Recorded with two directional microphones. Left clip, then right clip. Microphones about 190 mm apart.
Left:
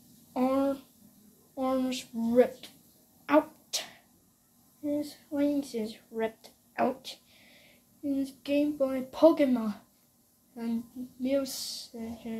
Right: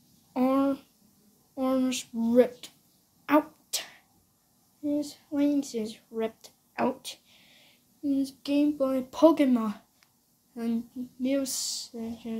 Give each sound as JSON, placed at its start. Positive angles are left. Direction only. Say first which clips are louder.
{"t": 0.3, "sound": "a sound", "louder": "right 2 dB", "side_deg": -35}
{"t": 1.5, "sound": "speech", "louder": "right 2 dB", "side_deg": -30}
{"t": 3.3, "sound": "beatboxing", "louder": "even", "side_deg": -30}
{"t": 5.0, "sound": "a sound", "louder": "right 2 dB", "side_deg": -30}
{"t": 8.0, "sound": "speech", "louder": "right 3 dB", "side_deg": -30}
{"t": 11.2, "sound": "speech", "louder": "right 1 dB", "side_deg": -30}